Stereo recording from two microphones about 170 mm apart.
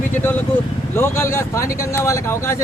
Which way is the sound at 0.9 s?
15° left (ahead or behind).